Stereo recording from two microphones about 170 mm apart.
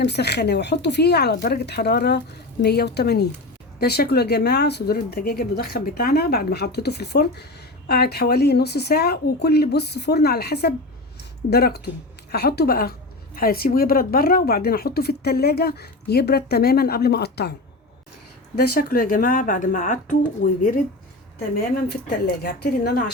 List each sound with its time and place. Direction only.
0.0 s speech: 80° left
11.2 s a sound: 70° left (ahead or behind)
12.3 s a woman's voice: 70° left (ahead or behind)
18.5 s speech: 65° left (ahead or behind)
21.3 s speech: 70° left (ahead or behind)